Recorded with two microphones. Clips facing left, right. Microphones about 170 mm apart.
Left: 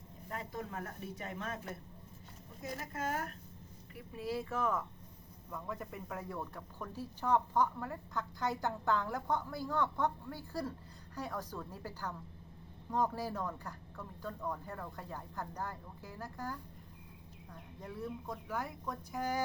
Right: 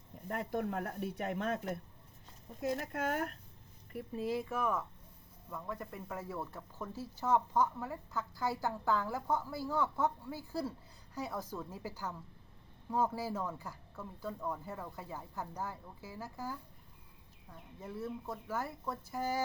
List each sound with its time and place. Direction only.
0.3 s speech: 60° right (ahead or behind)
4.1 s a woman's voice: 20° right (ahead or behind); by 19.4 s 5° right (ahead or behind)